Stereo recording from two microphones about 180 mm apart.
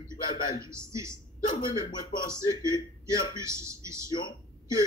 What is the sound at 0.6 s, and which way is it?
Speech, 15° right (ahead or behind).